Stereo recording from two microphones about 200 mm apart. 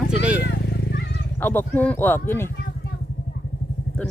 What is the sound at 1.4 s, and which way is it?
Speech, 10° left (ahead or behind).